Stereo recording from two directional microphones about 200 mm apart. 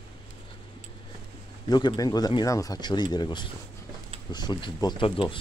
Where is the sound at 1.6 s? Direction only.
20° left (ahead or behind).